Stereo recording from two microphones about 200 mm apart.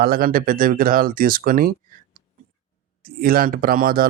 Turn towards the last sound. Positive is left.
turn(degrees=-45)  # may be behind; listen again after turning